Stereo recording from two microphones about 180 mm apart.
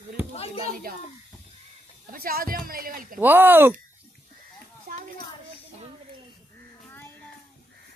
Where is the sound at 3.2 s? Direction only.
10° right (ahead or behind).